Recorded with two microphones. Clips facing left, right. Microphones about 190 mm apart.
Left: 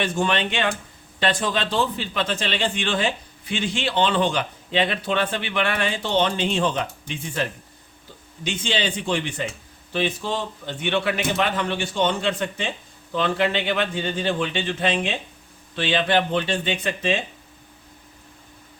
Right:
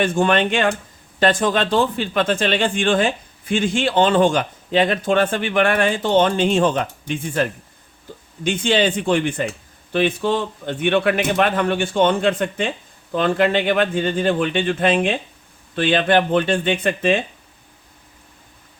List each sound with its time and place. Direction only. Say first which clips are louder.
0.0 s speech: right 6 dB; 50° right (ahead or behind)
8.4 s speech: right 7 dB; 50° right (ahead or behind)